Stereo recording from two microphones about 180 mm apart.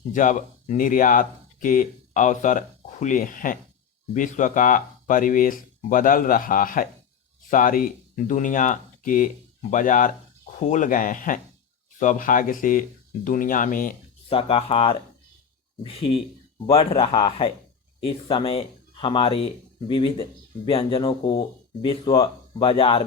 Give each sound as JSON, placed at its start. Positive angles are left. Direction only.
{"t": 0.1, "sound": "speech", "side_deg": 45}
{"t": 14.3, "sound": "speech", "side_deg": 30}